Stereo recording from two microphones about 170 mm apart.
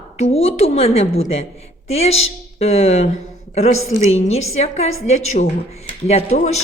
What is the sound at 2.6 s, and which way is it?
Speech, 40° left (ahead or behind).